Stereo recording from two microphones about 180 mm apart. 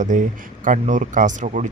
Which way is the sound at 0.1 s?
45° right (ahead or behind).